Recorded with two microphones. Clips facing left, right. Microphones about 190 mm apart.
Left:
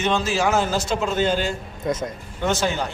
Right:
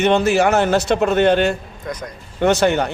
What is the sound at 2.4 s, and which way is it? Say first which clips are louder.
Speech: right 7 dB; 65° right (ahead or behind).